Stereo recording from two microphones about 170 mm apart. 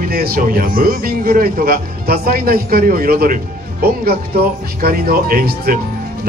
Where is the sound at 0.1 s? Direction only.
60° right (ahead or behind).